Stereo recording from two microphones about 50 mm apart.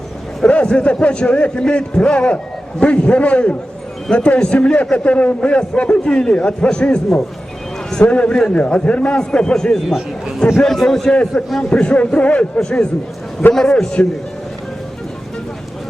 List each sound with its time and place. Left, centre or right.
0.4 s a man's voice: left
8.0 s a man's voice: left
9.9 s a man's voice: centre
10.6 s a man's voice: centre